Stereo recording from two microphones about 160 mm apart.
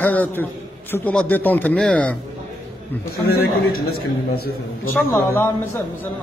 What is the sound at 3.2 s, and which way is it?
A man's voice, 75° left (ahead or behind).